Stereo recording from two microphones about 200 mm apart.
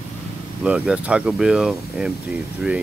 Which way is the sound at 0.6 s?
5° right (ahead or behind).